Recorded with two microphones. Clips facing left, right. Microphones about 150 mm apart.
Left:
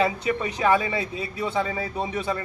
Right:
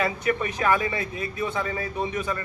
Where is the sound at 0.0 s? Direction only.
20° left (ahead or behind).